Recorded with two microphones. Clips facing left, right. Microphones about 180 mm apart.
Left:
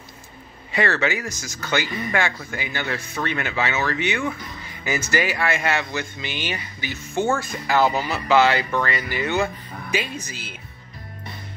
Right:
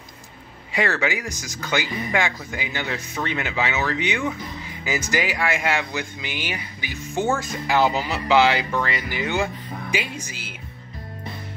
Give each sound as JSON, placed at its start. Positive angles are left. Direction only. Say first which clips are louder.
{"t": 0.7, "sound": "speech", "louder": "left 1 dB", "side_deg": -15}